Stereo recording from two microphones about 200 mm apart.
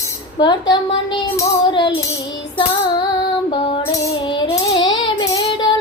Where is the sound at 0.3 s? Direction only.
20° left (ahead or behind).